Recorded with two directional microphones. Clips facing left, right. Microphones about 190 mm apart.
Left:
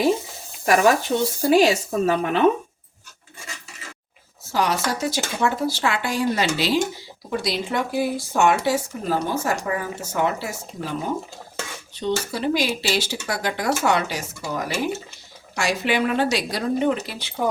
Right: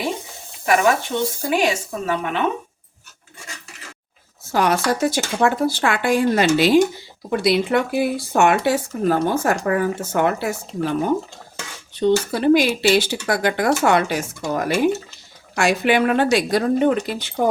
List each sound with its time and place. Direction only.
0.6 s speech: 40° left (ahead or behind)
4.5 s speech: 55° right (ahead or behind)
11.9 s speech: 55° right (ahead or behind)